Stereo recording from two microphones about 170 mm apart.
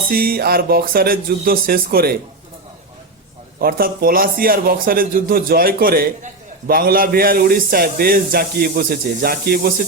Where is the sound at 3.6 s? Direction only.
60° right (ahead or behind).